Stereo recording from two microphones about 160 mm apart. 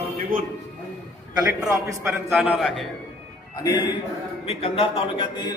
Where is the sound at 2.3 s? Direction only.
5° right (ahead or behind).